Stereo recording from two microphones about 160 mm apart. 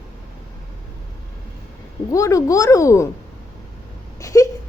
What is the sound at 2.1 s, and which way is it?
Speech, 20° left (ahead or behind).